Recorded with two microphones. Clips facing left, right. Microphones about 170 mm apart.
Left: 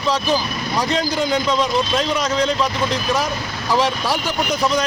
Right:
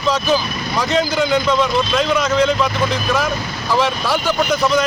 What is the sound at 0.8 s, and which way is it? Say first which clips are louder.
Speech: right 3 dB; 35° left (ahead or behind).